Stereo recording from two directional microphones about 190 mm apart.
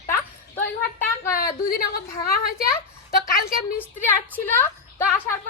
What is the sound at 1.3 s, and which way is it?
A woman's voice, 50° left (ahead or behind).